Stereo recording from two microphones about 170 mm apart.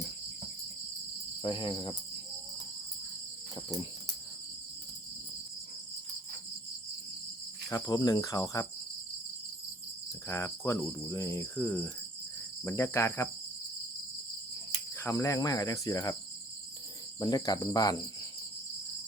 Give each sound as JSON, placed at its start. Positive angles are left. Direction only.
{"t": 1.4, "sound": "cricket", "side_deg": 30}
{"t": 7.7, "sound": "cricket", "side_deg": 20}
{"t": 10.2, "sound": "cricket", "side_deg": 15}
{"t": 14.9, "sound": "cricket", "side_deg": 15}
{"t": 17.2, "sound": "cricket", "side_deg": 20}